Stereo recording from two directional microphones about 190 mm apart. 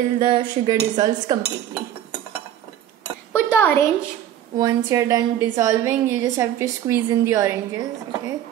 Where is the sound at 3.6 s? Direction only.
10° left (ahead or behind).